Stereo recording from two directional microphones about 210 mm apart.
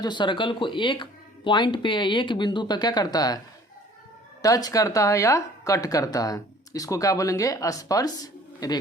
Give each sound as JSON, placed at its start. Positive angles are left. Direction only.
{"t": 0.0, "sound": "speech", "side_deg": 20}
{"t": 4.4, "sound": "speech", "side_deg": 15}